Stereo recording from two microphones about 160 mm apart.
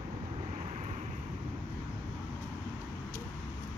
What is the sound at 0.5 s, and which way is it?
Vehicle, 45° right (ahead or behind).